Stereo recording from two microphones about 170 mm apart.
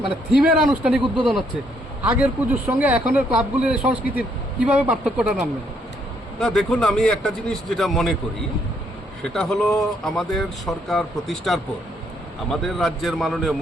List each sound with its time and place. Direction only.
0.3 s speech: 10° right (ahead or behind)
1.0 s speech: 30° right (ahead or behind)
2.0 s speech: 10° right (ahead or behind)
9.2 s speech: 5° left (ahead or behind)